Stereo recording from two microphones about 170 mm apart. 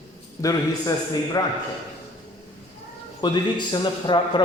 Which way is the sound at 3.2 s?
25° left (ahead or behind).